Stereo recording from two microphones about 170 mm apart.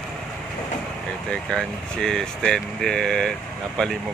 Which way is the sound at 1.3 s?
5° left (ahead or behind).